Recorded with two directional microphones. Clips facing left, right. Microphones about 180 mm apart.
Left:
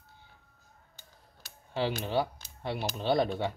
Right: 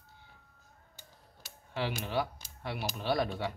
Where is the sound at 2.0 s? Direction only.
25° left (ahead or behind).